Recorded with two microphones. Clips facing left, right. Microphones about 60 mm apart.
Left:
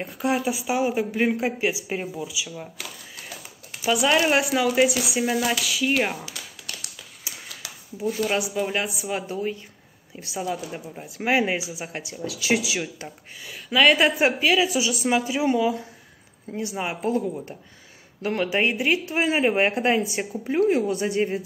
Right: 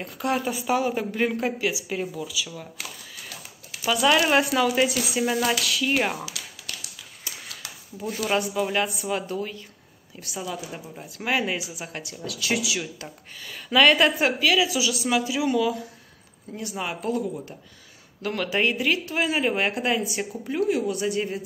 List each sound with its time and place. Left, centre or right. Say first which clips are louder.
0.0 s speech: left 2 dB; centre
1.6 s speech: left 1 dB; left
3.8 s speech: even; centre
8.3 s speech: even; centre
13.5 s speech: even; centre; by 17.2 s left
18.2 s speech: left 2 dB; left